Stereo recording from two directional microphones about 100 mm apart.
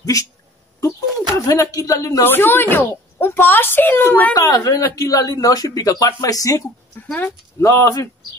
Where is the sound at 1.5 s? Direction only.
35° left (ahead or behind).